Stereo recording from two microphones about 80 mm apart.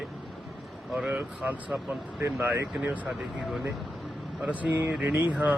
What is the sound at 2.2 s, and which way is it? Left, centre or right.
Speech, right.